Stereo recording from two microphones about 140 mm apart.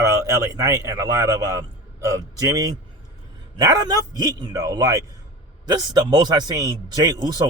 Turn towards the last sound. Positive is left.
turn(degrees=-30)  # may be behind; listen again after turning